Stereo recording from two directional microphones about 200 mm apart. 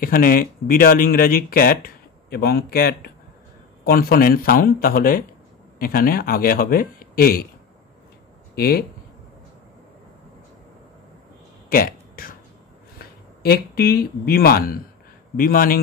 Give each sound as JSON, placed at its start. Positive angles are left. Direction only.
{"t": 0.0, "sound": "speech", "side_deg": 45}
{"t": 8.5, "sound": "speech", "side_deg": 50}
{"t": 11.7, "sound": "a sound", "side_deg": 45}
{"t": 13.0, "sound": "speech", "side_deg": 50}